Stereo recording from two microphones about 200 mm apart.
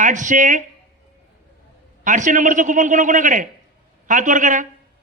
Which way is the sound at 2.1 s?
40° right (ahead or behind).